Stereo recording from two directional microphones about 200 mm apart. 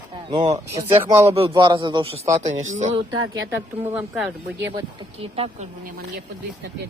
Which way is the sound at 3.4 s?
10° right (ahead or behind).